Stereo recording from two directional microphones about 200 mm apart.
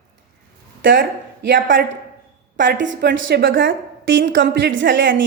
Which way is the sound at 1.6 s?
40° right (ahead or behind).